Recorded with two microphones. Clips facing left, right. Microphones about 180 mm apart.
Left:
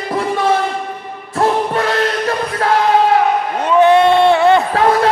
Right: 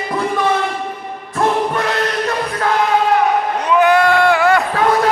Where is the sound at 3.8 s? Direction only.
25° left (ahead or behind).